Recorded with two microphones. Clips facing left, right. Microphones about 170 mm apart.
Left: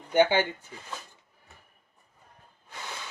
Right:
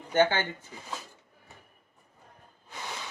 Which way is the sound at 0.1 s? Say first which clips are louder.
Left 2 dB; 15° left (ahead or behind).